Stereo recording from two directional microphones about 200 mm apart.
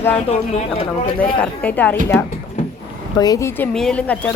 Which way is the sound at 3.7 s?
5° left (ahead or behind).